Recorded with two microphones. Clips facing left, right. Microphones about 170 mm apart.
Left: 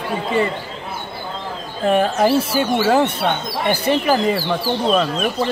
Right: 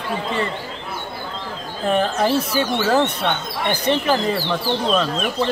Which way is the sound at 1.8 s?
5° left (ahead or behind).